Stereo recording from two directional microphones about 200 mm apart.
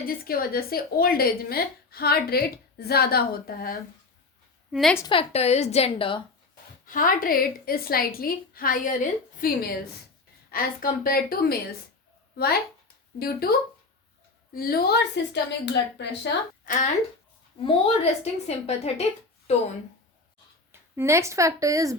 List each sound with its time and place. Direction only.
0.3 s a woman's voice: 50° left (ahead or behind)
4.7 s a woman's voice: centre (ahead or behind)
4.9 s a woman's voice: 25° left (ahead or behind)
6.8 s a woman's voice: 45° left (ahead or behind)
13.1 s a woman's voice: 50° left (ahead or behind)
14.5 s a woman's voice: 45° left (ahead or behind)
16.6 s a woman's voice: 40° left (ahead or behind)
17.6 s a woman's voice: 30° left (ahead or behind)
20.7 s a woman's voice: 10° right (ahead or behind)